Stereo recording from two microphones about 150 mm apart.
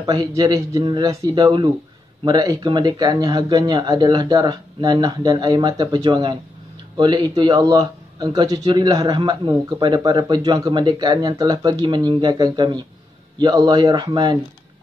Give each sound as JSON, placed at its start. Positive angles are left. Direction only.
{"t": 0.0, "sound": "speech", "side_deg": -25}